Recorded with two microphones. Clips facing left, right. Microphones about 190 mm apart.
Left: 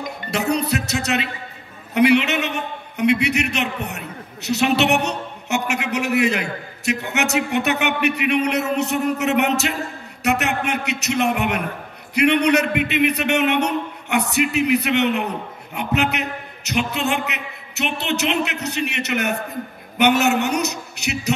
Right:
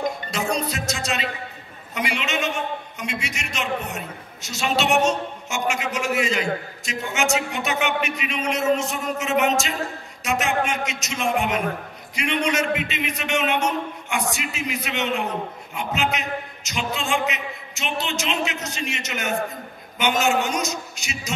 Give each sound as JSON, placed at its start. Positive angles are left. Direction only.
{"t": 0.3, "sound": "music", "side_deg": 65}
{"t": 2.0, "sound": "a man's voice", "side_deg": 65}